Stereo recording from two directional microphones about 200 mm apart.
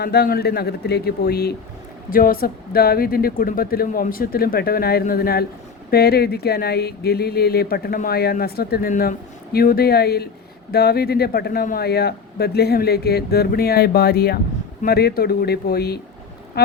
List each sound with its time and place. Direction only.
0.0 s speech: 50° left (ahead or behind)